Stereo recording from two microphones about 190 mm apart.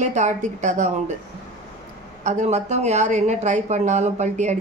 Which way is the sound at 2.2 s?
40° right (ahead or behind).